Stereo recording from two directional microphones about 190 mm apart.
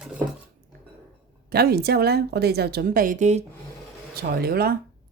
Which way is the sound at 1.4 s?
55° right (ahead or behind).